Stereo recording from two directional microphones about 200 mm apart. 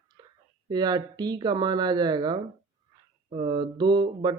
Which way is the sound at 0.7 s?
20° right (ahead or behind).